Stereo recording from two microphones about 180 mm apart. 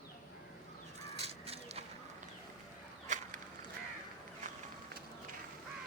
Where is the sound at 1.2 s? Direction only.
35° right (ahead or behind).